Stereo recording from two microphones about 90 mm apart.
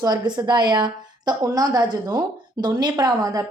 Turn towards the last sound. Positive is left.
turn(degrees=-45)  # may be behind; listen again after turning